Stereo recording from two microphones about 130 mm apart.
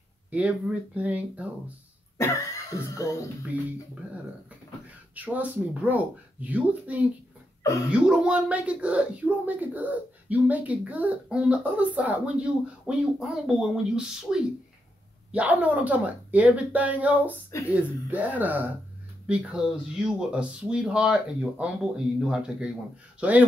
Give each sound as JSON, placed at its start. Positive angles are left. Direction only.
{"t": 0.3, "sound": "speech", "side_deg": -10}
{"t": 2.1, "sound": "speech", "side_deg": 25}
{"t": 5.1, "sound": "speech", "side_deg": -10}
{"t": 17.5, "sound": "speech", "side_deg": 25}
{"t": 18.1, "sound": "speech", "side_deg": -10}